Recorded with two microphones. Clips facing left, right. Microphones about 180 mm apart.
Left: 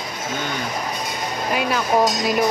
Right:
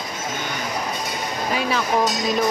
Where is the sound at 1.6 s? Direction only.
Centre (ahead or behind).